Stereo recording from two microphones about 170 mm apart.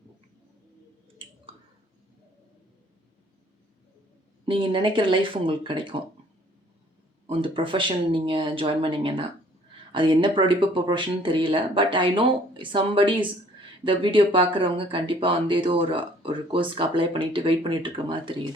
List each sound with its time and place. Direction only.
4.4 s speech: 30° right (ahead or behind)
7.3 s speech: 30° right (ahead or behind)